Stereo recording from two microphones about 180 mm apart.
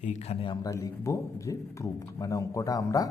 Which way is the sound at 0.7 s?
15° left (ahead or behind).